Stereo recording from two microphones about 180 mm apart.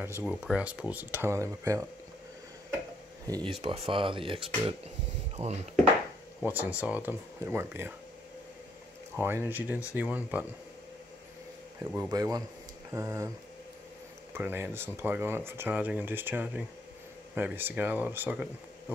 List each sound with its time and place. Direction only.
0.0 s speech: 10° right (ahead or behind)
3.3 s speech: 20° right (ahead or behind); by 5.6 s 35° right (ahead or behind)
6.4 s speech: 10° right (ahead or behind)
9.1 s speech: 10° right (ahead or behind)
11.8 s speech: 10° right (ahead or behind)
14.3 s speech: 10° right (ahead or behind)